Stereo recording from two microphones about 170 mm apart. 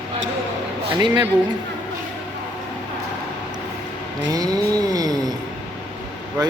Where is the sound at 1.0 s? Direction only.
25° right (ahead or behind).